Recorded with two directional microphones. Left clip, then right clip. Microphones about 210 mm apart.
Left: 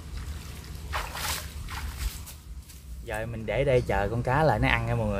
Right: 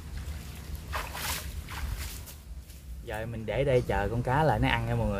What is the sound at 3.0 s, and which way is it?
Speech, 15° left (ahead or behind).